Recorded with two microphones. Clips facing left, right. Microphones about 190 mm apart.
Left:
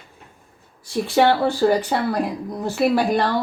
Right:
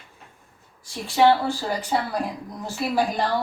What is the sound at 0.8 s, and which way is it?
Speech, 65° left (ahead or behind).